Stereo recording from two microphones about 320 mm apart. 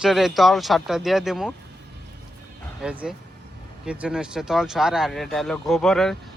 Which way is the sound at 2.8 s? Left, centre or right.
Centre.